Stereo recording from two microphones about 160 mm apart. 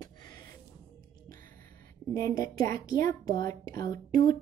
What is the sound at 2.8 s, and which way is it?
Speech, 60° right (ahead or behind).